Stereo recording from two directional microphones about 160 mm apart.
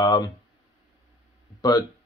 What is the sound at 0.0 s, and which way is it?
Speech, 25° left (ahead or behind).